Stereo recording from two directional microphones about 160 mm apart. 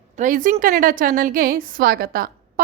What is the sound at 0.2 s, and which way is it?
A woman's voice, 55° right (ahead or behind).